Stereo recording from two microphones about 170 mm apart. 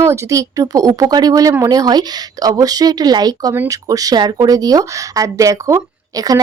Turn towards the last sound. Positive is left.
turn(degrees=-20)  # may be behind; listen again after turning